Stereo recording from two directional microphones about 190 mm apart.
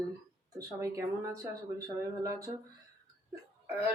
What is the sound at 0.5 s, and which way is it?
Speech, 15° right (ahead or behind).